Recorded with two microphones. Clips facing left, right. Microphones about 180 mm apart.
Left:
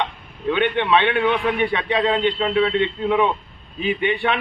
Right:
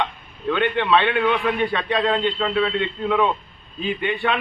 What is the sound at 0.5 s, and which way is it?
A man's voice, 15° left (ahead or behind).